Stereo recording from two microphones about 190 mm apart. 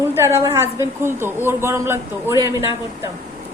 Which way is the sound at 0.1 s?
15° right (ahead or behind).